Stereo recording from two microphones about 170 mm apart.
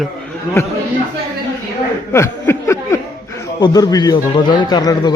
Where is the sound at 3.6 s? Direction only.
20° left (ahead or behind).